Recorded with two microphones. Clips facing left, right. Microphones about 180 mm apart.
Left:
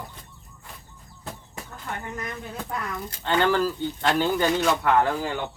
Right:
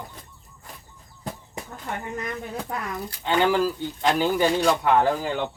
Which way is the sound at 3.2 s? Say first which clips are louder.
Right 1 dB; 10° right (ahead or behind).